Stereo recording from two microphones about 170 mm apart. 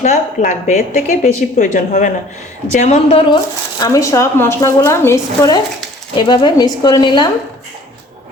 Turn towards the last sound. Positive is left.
turn(degrees=25)  # may be behind; listen again after turning